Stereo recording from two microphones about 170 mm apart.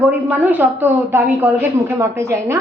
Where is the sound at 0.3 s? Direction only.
10° right (ahead or behind).